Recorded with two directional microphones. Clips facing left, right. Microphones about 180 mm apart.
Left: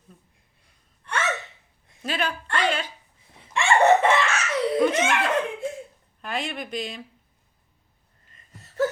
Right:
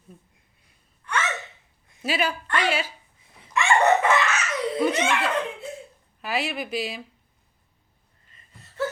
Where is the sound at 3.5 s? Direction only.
30° left (ahead or behind).